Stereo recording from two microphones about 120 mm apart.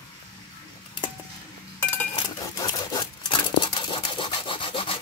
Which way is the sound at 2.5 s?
30° left (ahead or behind).